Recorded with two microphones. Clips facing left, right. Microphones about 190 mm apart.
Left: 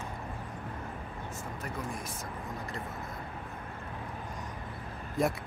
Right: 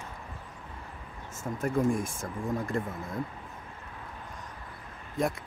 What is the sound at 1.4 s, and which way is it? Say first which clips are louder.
Speech: right 13 dB; 50° right (ahead or behind).